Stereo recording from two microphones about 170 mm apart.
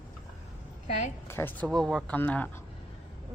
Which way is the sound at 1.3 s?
10° left (ahead or behind).